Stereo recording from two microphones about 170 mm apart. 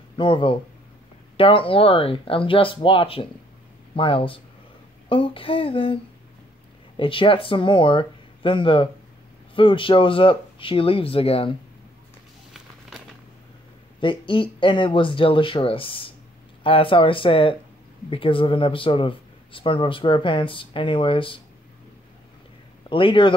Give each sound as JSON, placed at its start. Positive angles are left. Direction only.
{"t": 0.1, "sound": "speech", "side_deg": 30}
{"t": 7.0, "sound": "speech", "side_deg": 30}
{"t": 13.9, "sound": "speech", "side_deg": 30}
{"t": 22.8, "sound": "speech", "side_deg": 30}